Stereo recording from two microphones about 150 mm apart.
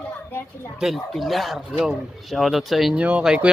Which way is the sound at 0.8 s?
Centre (ahead or behind).